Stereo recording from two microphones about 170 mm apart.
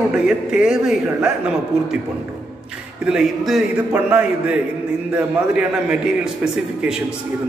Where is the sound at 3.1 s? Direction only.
Centre (ahead or behind).